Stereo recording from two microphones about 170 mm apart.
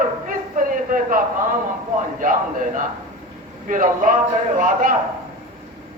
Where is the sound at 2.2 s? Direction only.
50° right (ahead or behind).